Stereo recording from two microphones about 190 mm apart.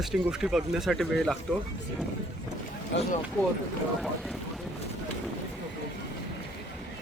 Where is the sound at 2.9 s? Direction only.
70° left (ahead or behind).